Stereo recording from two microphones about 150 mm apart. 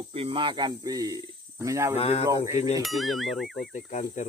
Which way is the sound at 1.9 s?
45° left (ahead or behind).